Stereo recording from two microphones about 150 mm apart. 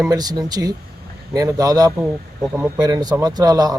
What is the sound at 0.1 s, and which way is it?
Speech, 25° right (ahead or behind).